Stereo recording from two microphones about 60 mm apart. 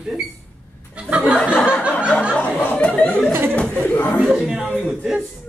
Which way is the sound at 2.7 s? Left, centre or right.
Left.